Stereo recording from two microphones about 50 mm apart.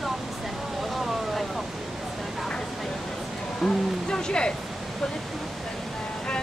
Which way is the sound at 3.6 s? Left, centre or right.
Centre.